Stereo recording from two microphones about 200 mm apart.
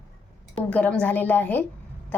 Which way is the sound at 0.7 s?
5° left (ahead or behind).